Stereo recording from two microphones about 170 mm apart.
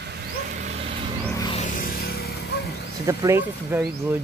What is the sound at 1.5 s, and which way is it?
Music, 55° left (ahead or behind).